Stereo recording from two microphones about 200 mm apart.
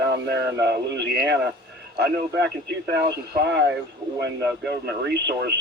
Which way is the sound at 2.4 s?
60° right (ahead or behind).